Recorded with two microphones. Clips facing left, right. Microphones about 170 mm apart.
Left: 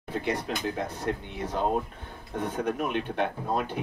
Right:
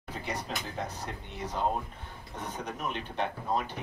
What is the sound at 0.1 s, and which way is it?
Speech, 55° left (ahead or behind).